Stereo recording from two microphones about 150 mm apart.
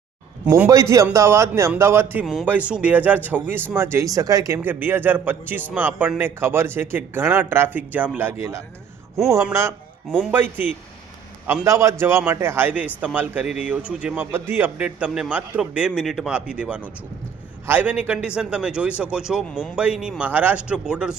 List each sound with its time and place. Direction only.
0.4 s a man's voice: 15° right (ahead or behind)
2.2 s a man's voice: centre (ahead or behind)